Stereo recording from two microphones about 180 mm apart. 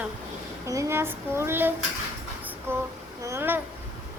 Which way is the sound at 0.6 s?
15° right (ahead or behind).